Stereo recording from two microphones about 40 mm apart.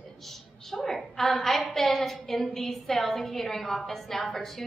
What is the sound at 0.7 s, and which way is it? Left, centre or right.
A woman's voice, centre.